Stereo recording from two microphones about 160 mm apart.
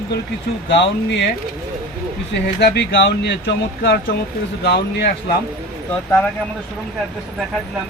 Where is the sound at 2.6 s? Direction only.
90° left.